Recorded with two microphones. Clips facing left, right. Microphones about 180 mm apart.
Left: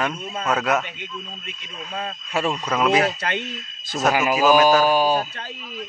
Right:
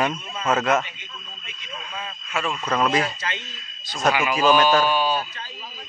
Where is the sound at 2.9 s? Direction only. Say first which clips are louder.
Left 4 dB; 65° left (ahead or behind).